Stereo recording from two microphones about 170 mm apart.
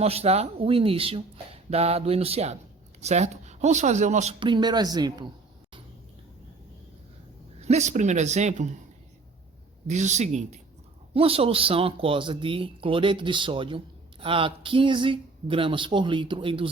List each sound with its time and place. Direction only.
0.0 s speech: 35° right (ahead or behind)
4.4 s speech: 30° right (ahead or behind)
7.7 s speech: 45° right (ahead or behind)
9.8 s speech: 45° right (ahead or behind)